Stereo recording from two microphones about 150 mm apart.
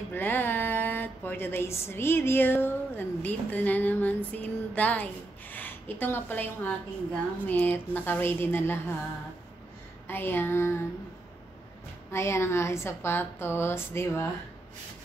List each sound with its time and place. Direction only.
0.1 s speech: 15° left (ahead or behind)
10.0 s speech: 15° left (ahead or behind)
12.1 s speech: 15° left (ahead or behind)